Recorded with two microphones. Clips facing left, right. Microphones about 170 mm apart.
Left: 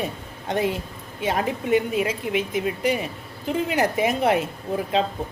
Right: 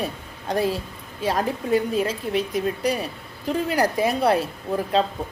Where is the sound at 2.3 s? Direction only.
90° left.